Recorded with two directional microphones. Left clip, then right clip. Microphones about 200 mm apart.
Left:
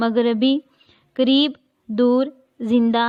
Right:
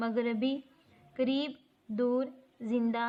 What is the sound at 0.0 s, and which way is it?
A woman's voice, 40° left (ahead or behind).